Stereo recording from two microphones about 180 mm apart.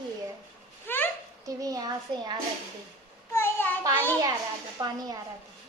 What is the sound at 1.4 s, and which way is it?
Speech, 20° right (ahead or behind).